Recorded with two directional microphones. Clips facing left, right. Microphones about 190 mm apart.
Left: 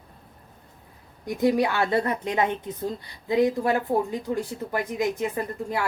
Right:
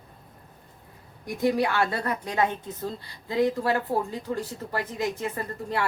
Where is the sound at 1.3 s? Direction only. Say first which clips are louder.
Left 2 dB; 20° left (ahead or behind).